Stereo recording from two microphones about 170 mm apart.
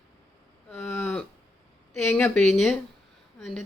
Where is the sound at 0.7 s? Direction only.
15° left (ahead or behind).